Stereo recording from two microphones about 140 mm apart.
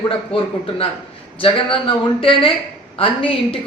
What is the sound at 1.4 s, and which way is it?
Speech, 40° left (ahead or behind).